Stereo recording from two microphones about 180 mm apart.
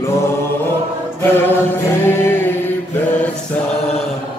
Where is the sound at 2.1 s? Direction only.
10° left (ahead or behind).